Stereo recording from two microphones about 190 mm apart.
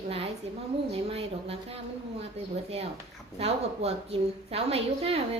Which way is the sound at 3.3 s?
30° right (ahead or behind).